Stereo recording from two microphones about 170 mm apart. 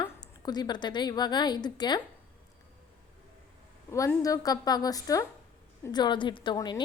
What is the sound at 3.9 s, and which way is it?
A woman's voice, 20° left (ahead or behind).